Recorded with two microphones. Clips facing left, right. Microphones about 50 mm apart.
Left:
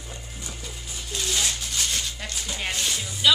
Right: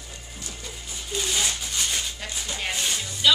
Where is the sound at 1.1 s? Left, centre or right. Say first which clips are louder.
Right 1 dB; centre.